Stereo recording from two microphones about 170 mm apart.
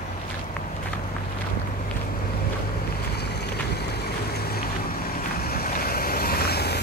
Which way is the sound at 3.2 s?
75° left (ahead or behind).